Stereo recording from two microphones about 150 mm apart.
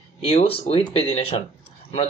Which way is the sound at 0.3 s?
45° left (ahead or behind).